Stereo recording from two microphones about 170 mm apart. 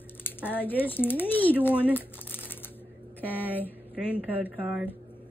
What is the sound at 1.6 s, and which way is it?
Crumpling, 10° left (ahead or behind).